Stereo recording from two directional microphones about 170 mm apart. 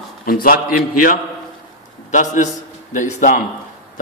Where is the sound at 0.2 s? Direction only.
55° left (ahead or behind).